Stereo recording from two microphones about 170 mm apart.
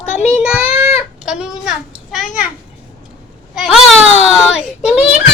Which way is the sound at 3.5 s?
Centre (ahead or behind).